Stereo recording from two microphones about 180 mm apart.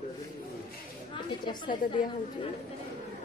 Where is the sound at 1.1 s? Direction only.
25° left (ahead or behind).